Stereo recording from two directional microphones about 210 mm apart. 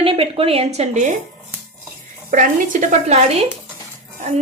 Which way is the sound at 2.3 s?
40° right (ahead or behind).